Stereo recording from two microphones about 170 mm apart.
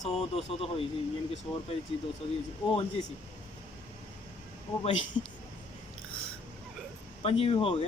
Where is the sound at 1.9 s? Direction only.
35° left (ahead or behind).